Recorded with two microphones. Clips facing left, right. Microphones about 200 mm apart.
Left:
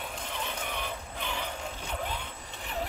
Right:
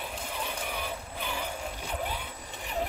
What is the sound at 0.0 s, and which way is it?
Vehicle, 10° right (ahead or behind).